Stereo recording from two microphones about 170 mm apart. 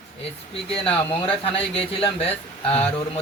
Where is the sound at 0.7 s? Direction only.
35° left (ahead or behind).